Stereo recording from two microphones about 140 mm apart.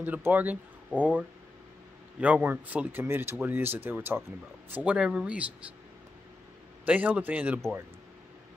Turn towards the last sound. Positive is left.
turn(degrees=-10)  # may be behind; listen again after turning